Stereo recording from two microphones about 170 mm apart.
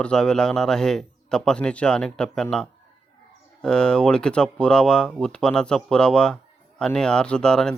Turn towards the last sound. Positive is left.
turn(degrees=5)  # may be behind; listen again after turning